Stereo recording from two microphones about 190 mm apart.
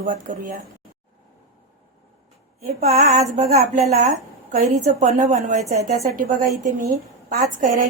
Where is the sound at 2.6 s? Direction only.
35° right (ahead or behind).